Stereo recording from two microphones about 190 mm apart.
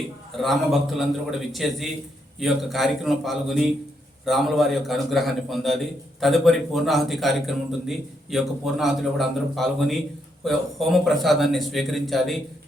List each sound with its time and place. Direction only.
0.4 s a man's voice: centre (ahead or behind)